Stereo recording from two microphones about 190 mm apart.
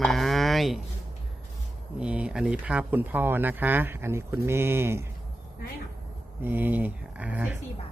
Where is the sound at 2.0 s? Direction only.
5° right (ahead or behind).